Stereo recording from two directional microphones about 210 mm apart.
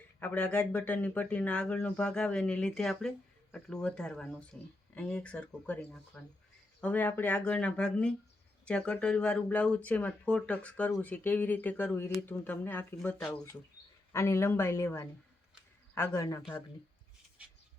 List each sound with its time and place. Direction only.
0.2 s speech: 5° left (ahead or behind)